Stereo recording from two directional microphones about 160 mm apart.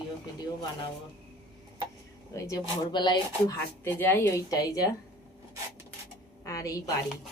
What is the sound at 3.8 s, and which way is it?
Speech, 15° left (ahead or behind).